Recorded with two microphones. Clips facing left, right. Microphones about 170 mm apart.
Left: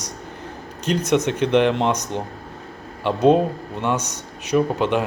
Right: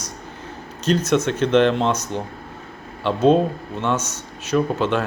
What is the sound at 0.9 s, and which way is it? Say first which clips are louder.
Speech: right 1 dB; 15° left (ahead or behind).